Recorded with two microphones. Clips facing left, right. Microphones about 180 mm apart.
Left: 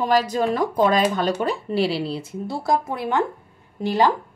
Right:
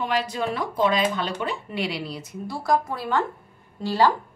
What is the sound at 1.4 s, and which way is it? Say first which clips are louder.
A woman's voice: left 6 dB; 35° left (ahead or behind).